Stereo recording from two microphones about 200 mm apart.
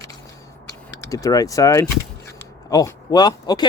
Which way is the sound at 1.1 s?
15° left (ahead or behind).